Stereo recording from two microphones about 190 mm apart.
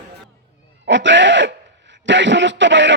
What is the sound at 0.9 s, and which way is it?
A man's voice, 70° right (ahead or behind).